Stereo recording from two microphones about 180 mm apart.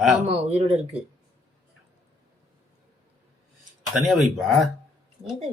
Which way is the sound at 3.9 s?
Centre (ahead or behind).